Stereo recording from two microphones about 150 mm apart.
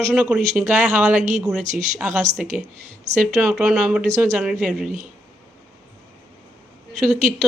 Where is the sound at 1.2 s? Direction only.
50° right (ahead or behind).